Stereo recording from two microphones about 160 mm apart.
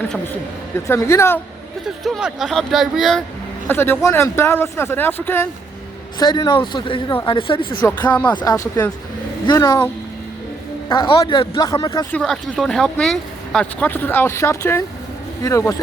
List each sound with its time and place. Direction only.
0.9 s speech: 15° left (ahead or behind)
2.0 s speech: centre (ahead or behind)
3.7 s speech: 15° left (ahead or behind)
6.1 s speech: 25° left (ahead or behind)
7.8 s speech: 10° left (ahead or behind)
8.4 s speech: 25° left (ahead or behind)
10.8 s speech: 30° left (ahead or behind)
12.1 s speech: 5° left (ahead or behind); by 15.7 s 20° left (ahead or behind)